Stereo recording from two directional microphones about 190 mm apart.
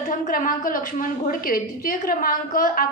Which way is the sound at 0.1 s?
45° left (ahead or behind).